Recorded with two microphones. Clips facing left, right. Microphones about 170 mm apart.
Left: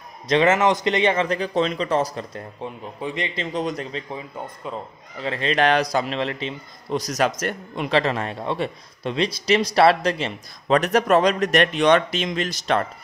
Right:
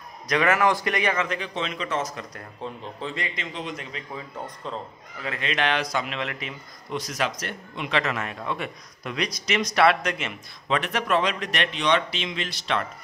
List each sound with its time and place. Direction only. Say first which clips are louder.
0.3 s speech: left 4 dB; 25° left (ahead or behind)
2.6 s speech: left 2 dB; 15° left (ahead or behind)
3.3 s speech: left 8 dB; 40° left (ahead or behind)
4.7 s speech: left 2 dB; 10° left (ahead or behind)
5.2 s speech: left 6 dB; 30° left (ahead or behind)